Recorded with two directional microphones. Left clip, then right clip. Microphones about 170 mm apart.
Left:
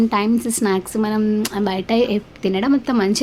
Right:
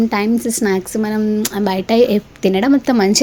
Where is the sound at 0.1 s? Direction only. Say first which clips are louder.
Right 2 dB; 15° right (ahead or behind).